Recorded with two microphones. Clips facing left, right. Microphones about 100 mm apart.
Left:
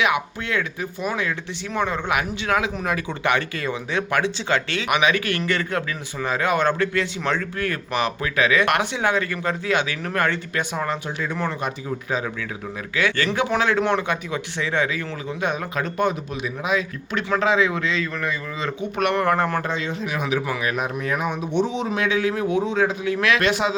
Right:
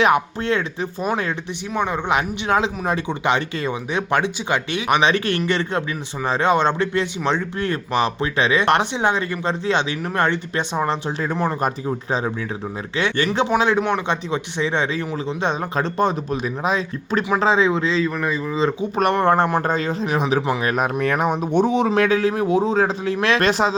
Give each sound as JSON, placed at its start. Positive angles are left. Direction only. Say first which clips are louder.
{"t": 0.0, "sound": "speech", "louder": "right 5 dB", "side_deg": -35}
{"t": 4.9, "sound": "speech", "louder": "right 3 dB", "side_deg": -30}
{"t": 13.0, "sound": "speech", "louder": "right 2 dB", "side_deg": -25}
{"t": 19.6, "sound": "speech", "louder": "right 5 dB", "side_deg": -40}
{"t": 21.0, "sound": "speech", "louder": "right 5 dB", "side_deg": -60}
{"t": 21.2, "sound": "speech", "louder": "right 4 dB", "side_deg": -50}